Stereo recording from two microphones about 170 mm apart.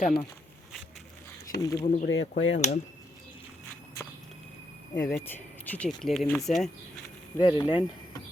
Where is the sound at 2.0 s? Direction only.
90° left.